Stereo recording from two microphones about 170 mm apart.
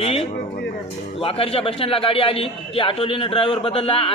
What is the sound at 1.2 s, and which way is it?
A man's voice, 35° left (ahead or behind).